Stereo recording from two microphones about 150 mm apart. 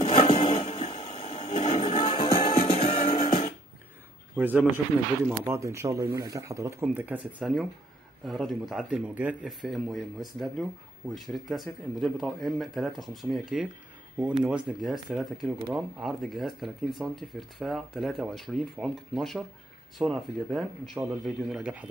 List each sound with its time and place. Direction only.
0.0 s a sound: 40° left (ahead or behind)
1.9 s music: 35° left (ahead or behind)
4.4 s speech: 10° right (ahead or behind)
11.2 s speech: centre (ahead or behind)